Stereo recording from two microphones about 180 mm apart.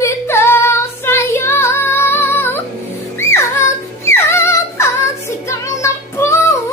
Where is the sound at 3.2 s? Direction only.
15° left (ahead or behind).